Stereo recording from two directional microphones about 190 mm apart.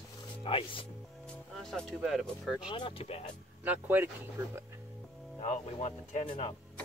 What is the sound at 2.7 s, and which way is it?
Speech, 25° left (ahead or behind).